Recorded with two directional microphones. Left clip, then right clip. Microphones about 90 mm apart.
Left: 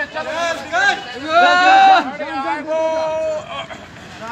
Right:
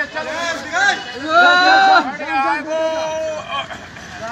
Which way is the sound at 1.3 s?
55° right (ahead or behind).